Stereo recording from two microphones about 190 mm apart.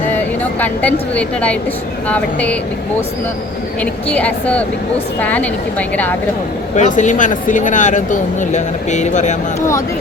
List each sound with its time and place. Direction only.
0.6 s a woman's voice: 10° left (ahead or behind)
4.1 s a woman's voice: 5° left (ahead or behind)
6.7 s speech: 40° left (ahead or behind)
9.6 s a woman's voice: 15° left (ahead or behind)